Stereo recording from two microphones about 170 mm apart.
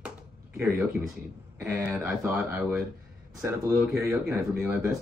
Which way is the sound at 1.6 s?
5° right (ahead or behind).